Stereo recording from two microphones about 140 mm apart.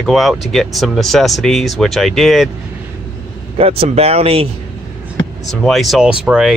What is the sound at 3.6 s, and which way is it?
Speech, 45° right (ahead or behind).